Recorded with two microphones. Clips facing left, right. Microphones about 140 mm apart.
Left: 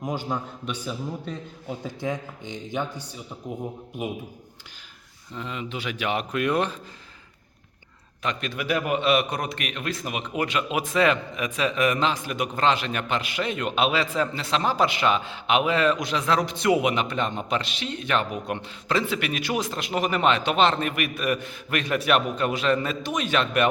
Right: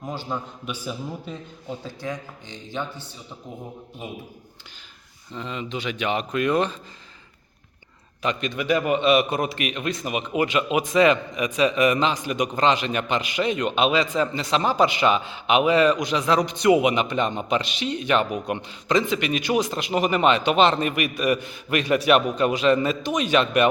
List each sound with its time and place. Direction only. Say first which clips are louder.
0.0 s speech: left 2 dB; 15° left (ahead or behind)
0.6 s a man's voice: even; 5° right (ahead or behind)
1.8 s speech: left 5 dB; 20° left (ahead or behind)
5.3 s a man's voice: right 2 dB; 5° left (ahead or behind)
8.2 s a man's voice: right 3 dB; centre (ahead or behind)